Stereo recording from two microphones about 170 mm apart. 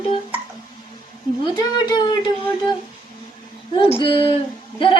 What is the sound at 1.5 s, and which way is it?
Speech, 25° left (ahead or behind).